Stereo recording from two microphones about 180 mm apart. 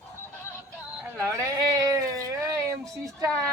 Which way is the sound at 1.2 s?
15° right (ahead or behind).